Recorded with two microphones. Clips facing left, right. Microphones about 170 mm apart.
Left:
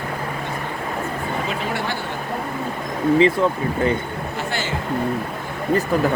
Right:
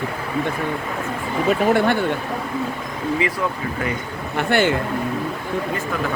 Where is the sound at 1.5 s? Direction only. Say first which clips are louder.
Right 8 dB; 55° right (ahead or behind).